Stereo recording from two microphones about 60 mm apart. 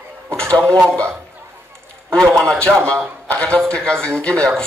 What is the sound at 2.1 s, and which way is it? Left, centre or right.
Speech, centre.